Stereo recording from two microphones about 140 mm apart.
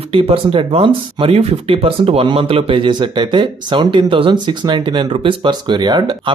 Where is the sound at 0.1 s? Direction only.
40° right (ahead or behind).